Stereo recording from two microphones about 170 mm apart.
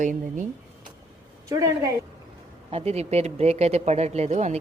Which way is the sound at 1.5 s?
20° right (ahead or behind).